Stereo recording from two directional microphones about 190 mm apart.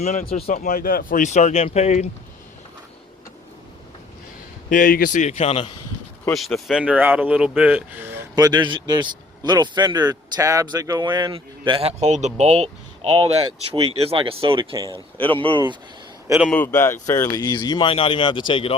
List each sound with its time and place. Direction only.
0.0 s speech: 35° left (ahead or behind)
0.4 s speech: 45° left (ahead or behind)
4.7 s speech: 50° left (ahead or behind)
6.3 s speech: centre (ahead or behind); by 15.8 s 25° right (ahead or behind)
16.5 s speech: 10° left (ahead or behind); by 18.7 s 25° left (ahead or behind)